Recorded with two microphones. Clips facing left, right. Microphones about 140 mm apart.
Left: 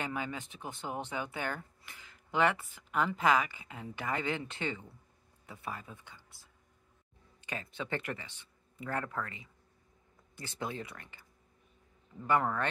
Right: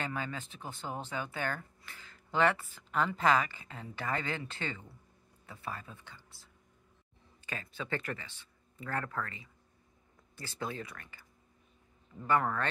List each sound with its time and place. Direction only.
0.0 s speech: 15° left (ahead or behind)
7.4 s speech: 20° left (ahead or behind)
12.3 s speech: 15° left (ahead or behind)